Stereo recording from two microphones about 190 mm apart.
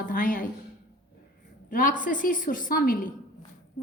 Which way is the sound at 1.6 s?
45° left (ahead or behind).